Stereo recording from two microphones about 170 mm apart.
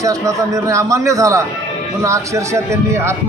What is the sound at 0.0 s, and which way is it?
A man's voice, 20° right (ahead or behind).